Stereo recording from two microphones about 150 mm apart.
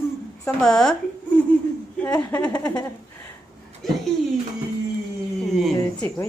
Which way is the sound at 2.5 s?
25° left (ahead or behind).